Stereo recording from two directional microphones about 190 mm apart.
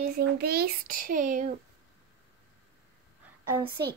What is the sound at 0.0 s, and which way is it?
A child's voice, 55° right (ahead or behind).